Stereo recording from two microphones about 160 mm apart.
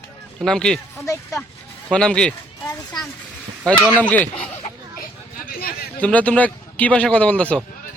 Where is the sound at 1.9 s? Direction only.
5° left (ahead or behind).